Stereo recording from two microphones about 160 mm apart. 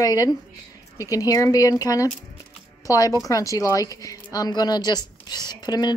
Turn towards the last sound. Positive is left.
turn(degrees=25)  # may be behind; listen again after turning